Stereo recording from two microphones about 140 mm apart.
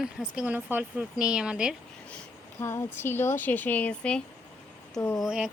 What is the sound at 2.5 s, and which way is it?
Speech, 20° left (ahead or behind).